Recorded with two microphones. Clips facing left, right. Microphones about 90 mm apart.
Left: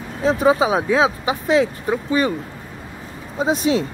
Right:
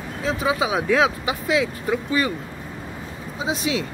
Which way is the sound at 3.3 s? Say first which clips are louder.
Left 6 dB; 45° left (ahead or behind).